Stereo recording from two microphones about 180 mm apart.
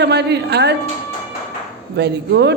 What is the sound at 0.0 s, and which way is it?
Speech, 65° right (ahead or behind).